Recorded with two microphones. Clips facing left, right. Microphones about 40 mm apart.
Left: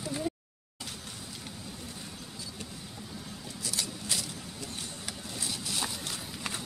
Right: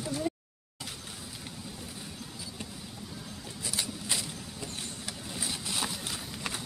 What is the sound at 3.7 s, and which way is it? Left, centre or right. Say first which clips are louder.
Vehicle: right 1 dB; right.